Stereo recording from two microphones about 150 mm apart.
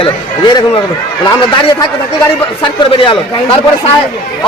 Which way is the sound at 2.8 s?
35° left (ahead or behind).